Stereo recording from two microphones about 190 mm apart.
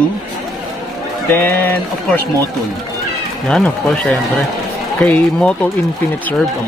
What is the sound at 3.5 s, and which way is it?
Speech, 5° left (ahead or behind).